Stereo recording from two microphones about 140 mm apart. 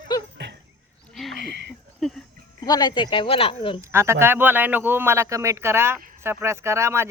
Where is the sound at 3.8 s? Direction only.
20° right (ahead or behind).